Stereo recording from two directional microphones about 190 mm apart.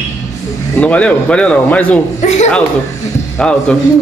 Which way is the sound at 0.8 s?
5° left (ahead or behind).